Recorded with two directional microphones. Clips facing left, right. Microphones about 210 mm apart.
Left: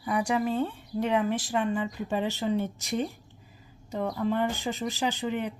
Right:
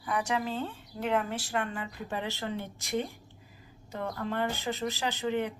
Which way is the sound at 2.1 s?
15° left (ahead or behind).